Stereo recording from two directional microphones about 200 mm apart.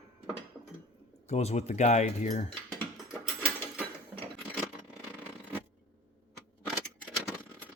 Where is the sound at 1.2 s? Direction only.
35° left (ahead or behind).